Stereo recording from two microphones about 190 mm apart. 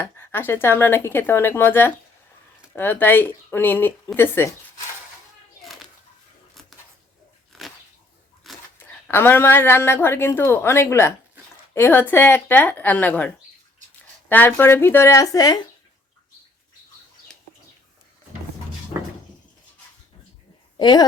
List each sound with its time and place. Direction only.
0.0 s a woman's voice: 10° left (ahead or behind)
6.5 s a sound: centre (ahead or behind)
9.0 s a woman's voice: 10° left (ahead or behind)
20.7 s a woman's voice: 25° left (ahead or behind)